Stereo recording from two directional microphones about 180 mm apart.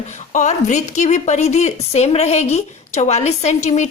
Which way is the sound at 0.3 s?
40° left (ahead or behind).